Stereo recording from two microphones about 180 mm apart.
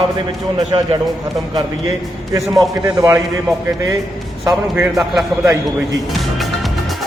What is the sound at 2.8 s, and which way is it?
Speech, 20° right (ahead or behind).